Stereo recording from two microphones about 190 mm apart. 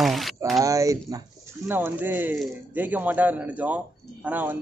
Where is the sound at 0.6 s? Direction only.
15° right (ahead or behind).